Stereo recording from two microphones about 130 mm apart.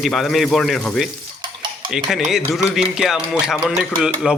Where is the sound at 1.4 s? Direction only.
35° right (ahead or behind).